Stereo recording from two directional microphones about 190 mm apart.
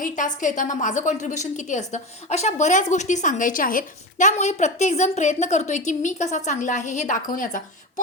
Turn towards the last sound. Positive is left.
turn(degrees=45)  # may be behind; listen again after turning